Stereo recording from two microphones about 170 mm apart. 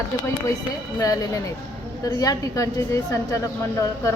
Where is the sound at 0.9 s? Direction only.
20° left (ahead or behind).